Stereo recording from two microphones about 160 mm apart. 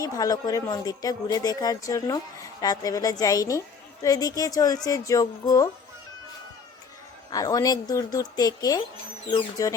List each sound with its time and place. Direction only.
0.0 s speech: 25° left (ahead or behind)
7.3 s speech: 20° left (ahead or behind)